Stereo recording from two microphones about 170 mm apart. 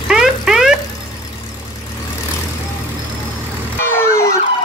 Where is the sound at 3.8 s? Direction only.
15° left (ahead or behind).